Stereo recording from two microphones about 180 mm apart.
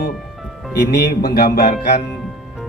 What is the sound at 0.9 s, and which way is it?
Speech, 60° left (ahead or behind).